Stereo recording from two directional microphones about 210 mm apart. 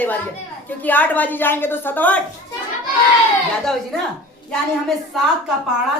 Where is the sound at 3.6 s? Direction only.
Centre (ahead or behind).